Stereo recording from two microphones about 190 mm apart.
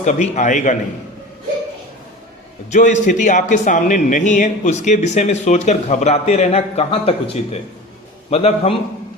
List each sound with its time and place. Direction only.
0.0 s a man's voice: 40° left (ahead or behind)
2.6 s a man's voice: 40° left (ahead or behind)